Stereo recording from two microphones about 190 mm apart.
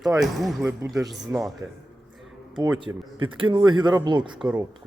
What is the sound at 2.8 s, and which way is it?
Speech, 25° right (ahead or behind).